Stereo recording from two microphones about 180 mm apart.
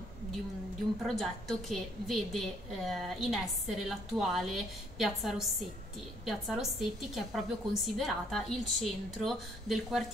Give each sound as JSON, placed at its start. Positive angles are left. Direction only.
{"t": 1.0, "sound": "a woman's voice", "side_deg": 0}